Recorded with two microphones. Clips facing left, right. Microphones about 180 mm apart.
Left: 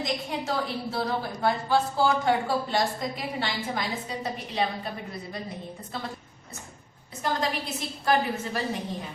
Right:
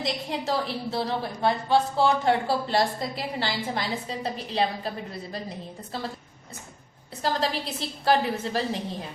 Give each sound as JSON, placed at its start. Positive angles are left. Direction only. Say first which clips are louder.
{"t": 0.0, "sound": "a woman's voice", "louder": "right 1 dB", "side_deg": -30}
{"t": 7.2, "sound": "a woman's voice", "louder": "right 2 dB", "side_deg": -30}